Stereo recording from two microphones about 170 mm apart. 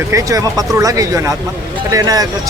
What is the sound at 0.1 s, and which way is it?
A man's voice, 20° right (ahead or behind).